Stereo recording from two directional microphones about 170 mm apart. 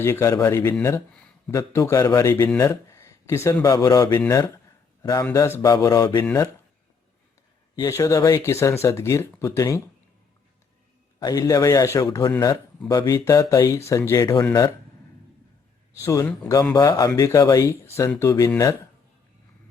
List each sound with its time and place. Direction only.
0.0 s a man's voice: 15° left (ahead or behind)
0.9 s speech: 5° left (ahead or behind)
1.5 s a man's voice: 15° left (ahead or behind)
7.8 s a man's voice: 20° left (ahead or behind)
11.2 s speech: 20° left (ahead or behind)
16.0 s a man's voice: 15° left (ahead or behind)
16.7 s speech: 25° left (ahead or behind)